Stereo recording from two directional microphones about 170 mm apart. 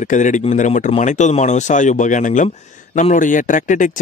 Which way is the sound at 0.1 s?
45° left (ahead or behind).